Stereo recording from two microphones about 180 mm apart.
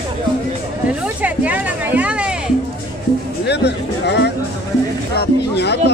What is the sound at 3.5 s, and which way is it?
Music, 70° left (ahead or behind).